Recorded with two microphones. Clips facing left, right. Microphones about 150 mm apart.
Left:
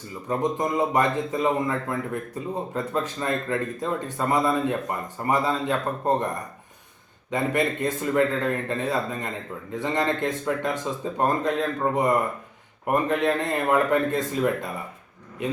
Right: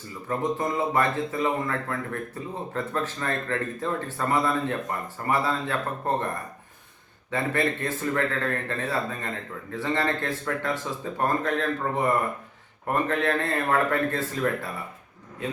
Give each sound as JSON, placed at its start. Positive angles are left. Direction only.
{"t": 0.3, "sound": "speech", "side_deg": 15}
{"t": 7.3, "sound": "speech", "side_deg": 15}